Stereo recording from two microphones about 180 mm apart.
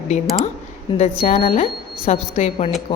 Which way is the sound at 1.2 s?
35° left (ahead or behind).